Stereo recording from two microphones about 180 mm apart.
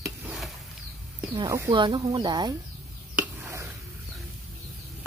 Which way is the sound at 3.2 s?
10° right (ahead or behind).